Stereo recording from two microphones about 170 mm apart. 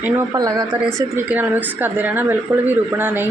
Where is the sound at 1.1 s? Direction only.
10° right (ahead or behind).